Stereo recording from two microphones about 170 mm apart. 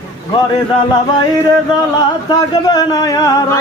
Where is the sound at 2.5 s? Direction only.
25° left (ahead or behind).